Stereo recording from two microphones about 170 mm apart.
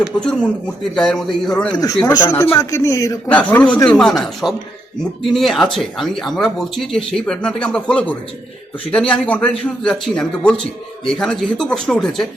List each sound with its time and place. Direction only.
0.0 s a man's voice: 5° left (ahead or behind)
1.7 s a man's voice: 20° left (ahead or behind)
3.3 s a man's voice: 5° left (ahead or behind)